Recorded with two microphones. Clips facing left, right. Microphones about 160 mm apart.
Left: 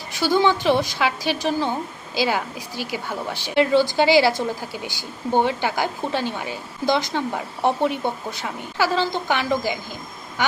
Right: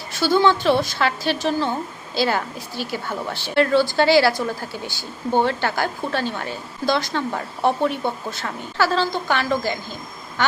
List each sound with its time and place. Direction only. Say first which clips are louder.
0.1 s speech: right 1 dB; 15° left (ahead or behind)